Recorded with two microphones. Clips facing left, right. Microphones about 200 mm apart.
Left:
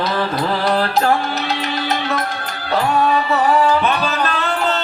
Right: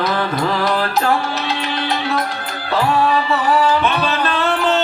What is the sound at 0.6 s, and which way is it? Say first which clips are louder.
Music: left 1 dB; 35° left (ahead or behind).